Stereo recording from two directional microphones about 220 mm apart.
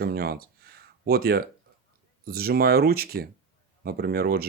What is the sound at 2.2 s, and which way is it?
Speech, 45° right (ahead or behind).